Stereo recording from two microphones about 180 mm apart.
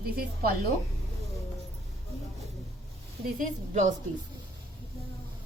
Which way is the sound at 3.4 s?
45° right (ahead or behind).